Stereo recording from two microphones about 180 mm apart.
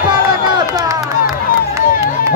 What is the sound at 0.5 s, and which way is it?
Run, 20° right (ahead or behind).